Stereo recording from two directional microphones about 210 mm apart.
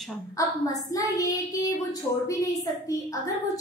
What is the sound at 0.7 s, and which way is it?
A woman's voice, 15° left (ahead or behind).